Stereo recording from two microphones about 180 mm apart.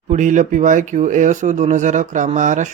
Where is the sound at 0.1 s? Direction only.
45° right (ahead or behind).